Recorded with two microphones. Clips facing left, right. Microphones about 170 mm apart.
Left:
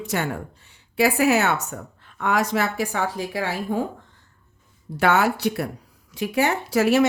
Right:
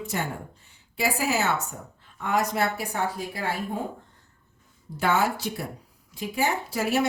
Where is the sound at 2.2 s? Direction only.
85° left.